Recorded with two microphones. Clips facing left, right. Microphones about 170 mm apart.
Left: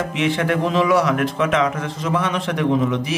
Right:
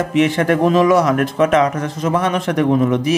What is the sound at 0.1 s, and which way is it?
A man's voice, 45° right (ahead or behind).